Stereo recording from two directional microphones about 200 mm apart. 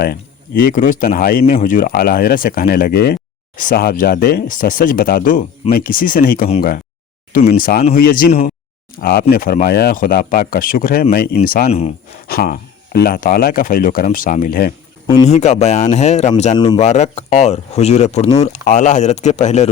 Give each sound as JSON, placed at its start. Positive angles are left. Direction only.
{"t": 0.0, "sound": "speech", "side_deg": 45}
{"t": 8.3, "sound": "speech", "side_deg": 30}
{"t": 9.0, "sound": "speech", "side_deg": 50}
{"t": 15.0, "sound": "a man's voice", "side_deg": 20}
{"t": 15.3, "sound": "speech", "side_deg": 35}